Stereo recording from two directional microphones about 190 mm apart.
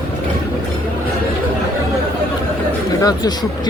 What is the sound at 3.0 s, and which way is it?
Speech, 20° left (ahead or behind).